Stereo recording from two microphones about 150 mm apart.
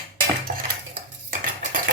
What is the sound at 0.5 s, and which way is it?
Cutlery, 65° right (ahead or behind).